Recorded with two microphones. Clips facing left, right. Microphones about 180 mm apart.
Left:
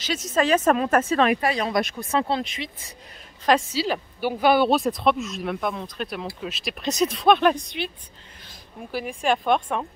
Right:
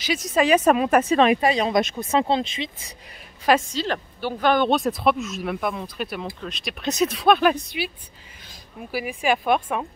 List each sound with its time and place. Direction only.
0.3 s a woman's voice: 15° right (ahead or behind)
3.7 s speech: 5° left (ahead or behind)
8.9 s speech: 5° right (ahead or behind)